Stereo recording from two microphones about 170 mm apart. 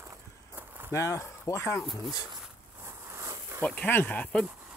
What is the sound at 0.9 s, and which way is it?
Speech, 20° left (ahead or behind).